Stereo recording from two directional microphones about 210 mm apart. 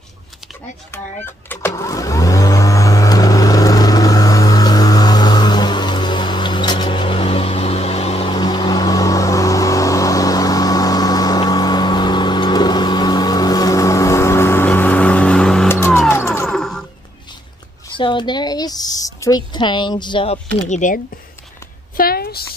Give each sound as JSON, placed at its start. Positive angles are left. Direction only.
{"t": 0.9, "sound": "speech", "side_deg": 10}
{"t": 1.8, "sound": "vehicle", "side_deg": 15}
{"t": 17.9, "sound": "a sound", "side_deg": 25}